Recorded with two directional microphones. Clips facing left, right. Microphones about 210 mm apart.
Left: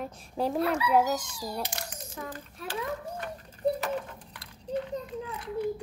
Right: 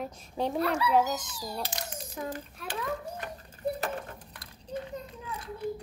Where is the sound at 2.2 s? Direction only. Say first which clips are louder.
Right 3 dB; 25° right (ahead or behind).